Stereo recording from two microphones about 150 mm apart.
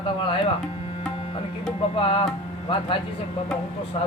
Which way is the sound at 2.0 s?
35° left (ahead or behind).